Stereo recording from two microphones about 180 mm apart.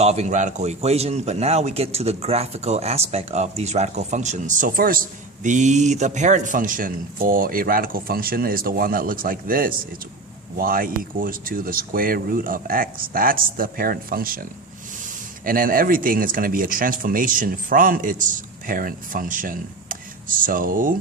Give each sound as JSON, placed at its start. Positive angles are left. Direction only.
{"t": 0.0, "sound": "a man's voice", "side_deg": -35}
{"t": 15.4, "sound": "speech", "side_deg": -50}